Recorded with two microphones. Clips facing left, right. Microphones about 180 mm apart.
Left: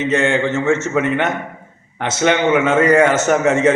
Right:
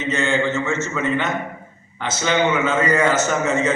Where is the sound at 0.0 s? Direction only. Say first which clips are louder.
Left 4 dB; 75° left (ahead or behind).